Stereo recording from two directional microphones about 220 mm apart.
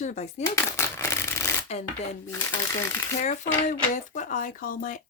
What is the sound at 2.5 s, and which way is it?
Speech, 10° left (ahead or behind).